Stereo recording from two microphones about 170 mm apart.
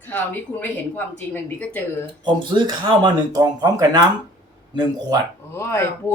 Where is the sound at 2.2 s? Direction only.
25° right (ahead or behind).